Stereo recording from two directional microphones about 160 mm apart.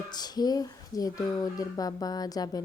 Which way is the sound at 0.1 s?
25° left (ahead or behind).